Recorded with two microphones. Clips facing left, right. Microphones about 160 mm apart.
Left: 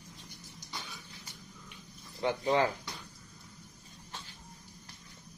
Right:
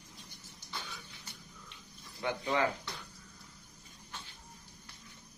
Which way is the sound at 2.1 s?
30° left (ahead or behind).